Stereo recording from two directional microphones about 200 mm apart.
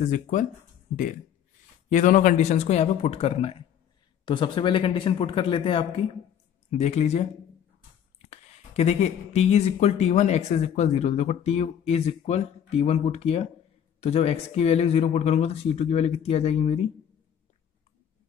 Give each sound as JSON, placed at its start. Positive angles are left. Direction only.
{"t": 0.0, "sound": "speech", "side_deg": 40}
{"t": 1.9, "sound": "speech", "side_deg": 40}